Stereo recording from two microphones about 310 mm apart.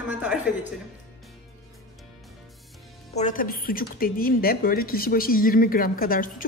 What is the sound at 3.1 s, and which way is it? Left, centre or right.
A woman's voice, left.